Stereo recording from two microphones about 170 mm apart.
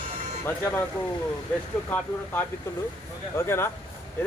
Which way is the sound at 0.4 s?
15° left (ahead or behind).